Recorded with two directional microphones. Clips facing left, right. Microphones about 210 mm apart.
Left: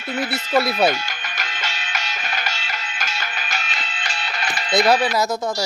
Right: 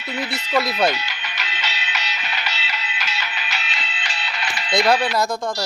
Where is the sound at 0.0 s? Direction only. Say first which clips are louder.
Left 3 dB; 50° left (ahead or behind).